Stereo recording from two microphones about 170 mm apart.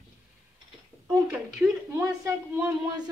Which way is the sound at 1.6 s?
15° right (ahead or behind).